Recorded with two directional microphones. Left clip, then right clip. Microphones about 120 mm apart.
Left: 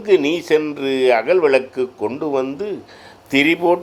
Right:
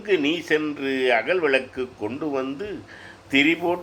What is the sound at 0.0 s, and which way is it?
Speech, 40° left (ahead or behind).